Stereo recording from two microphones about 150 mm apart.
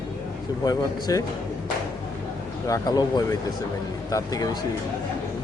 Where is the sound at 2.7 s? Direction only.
25° left (ahead or behind).